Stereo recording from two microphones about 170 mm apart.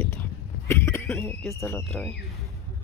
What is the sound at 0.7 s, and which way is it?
Cough, 15° left (ahead or behind).